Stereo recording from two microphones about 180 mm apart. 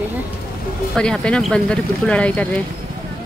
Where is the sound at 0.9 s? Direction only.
5° left (ahead or behind).